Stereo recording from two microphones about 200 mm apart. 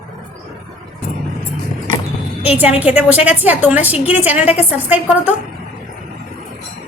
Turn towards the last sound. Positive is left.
turn(degrees=-10)  # may be behind; listen again after turning